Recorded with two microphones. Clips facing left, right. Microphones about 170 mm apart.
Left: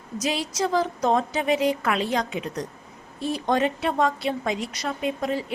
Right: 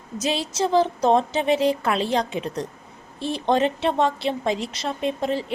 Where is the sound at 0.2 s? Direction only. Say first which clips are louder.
Right 2 dB; 25° right (ahead or behind).